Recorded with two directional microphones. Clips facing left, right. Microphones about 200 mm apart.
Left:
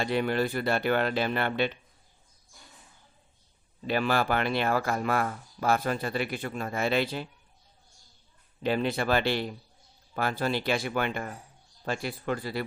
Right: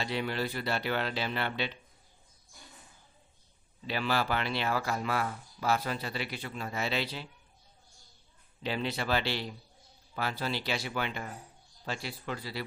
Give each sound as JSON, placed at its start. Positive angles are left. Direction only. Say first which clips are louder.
{"t": 0.0, "sound": "speech", "louder": "left 6 dB", "side_deg": 50}
{"t": 3.8, "sound": "speech", "louder": "left 5 dB", "side_deg": 50}
{"t": 8.6, "sound": "speech", "louder": "left 6 dB", "side_deg": 50}